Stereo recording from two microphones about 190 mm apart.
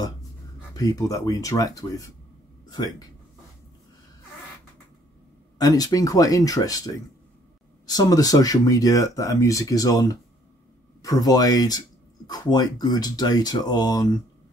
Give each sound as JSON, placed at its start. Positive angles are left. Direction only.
{"t": 0.7, "sound": "speech", "side_deg": 20}
{"t": 5.6, "sound": "speech", "side_deg": 20}